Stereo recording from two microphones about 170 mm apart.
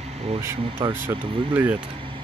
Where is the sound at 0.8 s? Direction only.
25° right (ahead or behind).